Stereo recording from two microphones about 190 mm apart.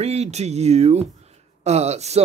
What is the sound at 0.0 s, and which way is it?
Speech, 35° right (ahead or behind).